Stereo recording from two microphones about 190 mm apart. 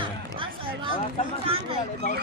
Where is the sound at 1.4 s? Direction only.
30° right (ahead or behind).